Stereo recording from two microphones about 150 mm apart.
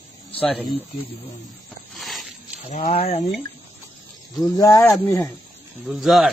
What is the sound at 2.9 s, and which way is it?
Speech, 45° left (ahead or behind).